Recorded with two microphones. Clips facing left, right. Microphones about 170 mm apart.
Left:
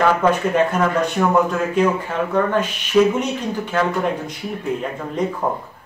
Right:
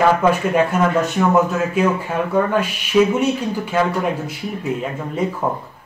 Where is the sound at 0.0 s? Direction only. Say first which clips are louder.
Right 1 dB; 10° right (ahead or behind).